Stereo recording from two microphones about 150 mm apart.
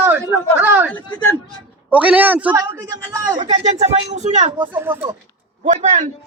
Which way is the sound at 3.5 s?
45° right (ahead or behind).